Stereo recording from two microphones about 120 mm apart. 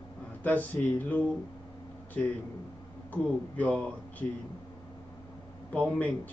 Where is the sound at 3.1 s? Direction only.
15° left (ahead or behind).